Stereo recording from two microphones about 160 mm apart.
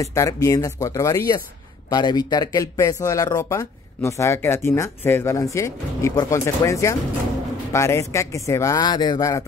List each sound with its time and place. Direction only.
0.0 s speech: 20° left (ahead or behind)